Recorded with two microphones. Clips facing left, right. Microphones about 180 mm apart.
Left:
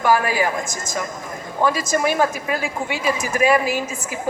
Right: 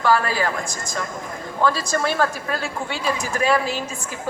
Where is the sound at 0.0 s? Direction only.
15° left (ahead or behind).